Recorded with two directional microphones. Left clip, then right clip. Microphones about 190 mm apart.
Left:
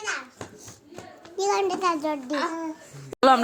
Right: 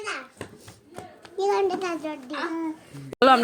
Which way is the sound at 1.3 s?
40° left (ahead or behind).